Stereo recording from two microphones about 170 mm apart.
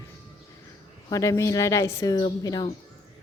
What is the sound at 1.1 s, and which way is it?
A woman's voice, 20° left (ahead or behind).